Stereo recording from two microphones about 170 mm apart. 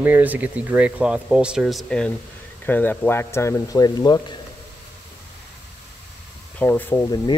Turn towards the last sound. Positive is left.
turn(degrees=15)  # may be behind; listen again after turning